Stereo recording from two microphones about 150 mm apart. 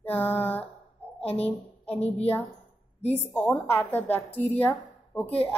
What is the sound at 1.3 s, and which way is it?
Speech, 40° left (ahead or behind).